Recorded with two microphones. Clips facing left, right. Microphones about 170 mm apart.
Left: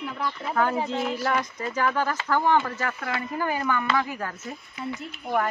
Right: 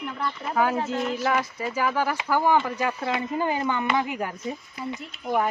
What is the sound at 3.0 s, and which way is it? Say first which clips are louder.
Speech: right 3 dB; 20° right (ahead or behind).